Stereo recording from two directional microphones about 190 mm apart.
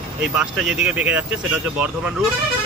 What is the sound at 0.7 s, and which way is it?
Speech, 5° right (ahead or behind).